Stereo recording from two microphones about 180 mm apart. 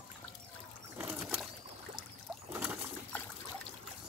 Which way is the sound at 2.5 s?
5° right (ahead or behind).